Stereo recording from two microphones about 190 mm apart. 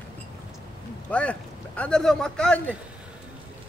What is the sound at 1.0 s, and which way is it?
Speech, 5° left (ahead or behind).